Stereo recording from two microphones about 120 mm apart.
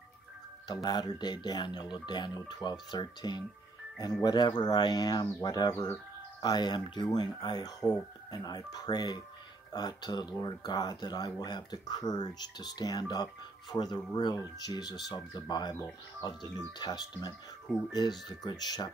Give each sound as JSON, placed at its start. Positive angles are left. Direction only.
{"t": 0.8, "sound": "speech", "side_deg": 35}
{"t": 6.4, "sound": "speech", "side_deg": 35}